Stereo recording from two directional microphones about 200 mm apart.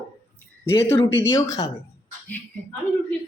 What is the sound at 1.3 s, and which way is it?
Speech, 15° left (ahead or behind).